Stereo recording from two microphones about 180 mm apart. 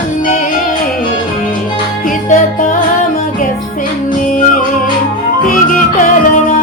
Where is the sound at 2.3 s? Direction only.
45° left (ahead or behind).